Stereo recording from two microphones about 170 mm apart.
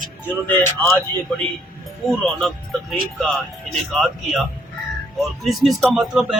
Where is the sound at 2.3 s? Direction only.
Centre (ahead or behind).